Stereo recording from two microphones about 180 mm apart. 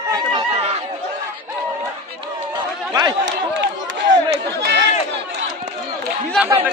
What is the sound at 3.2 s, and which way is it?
Run, 90° right.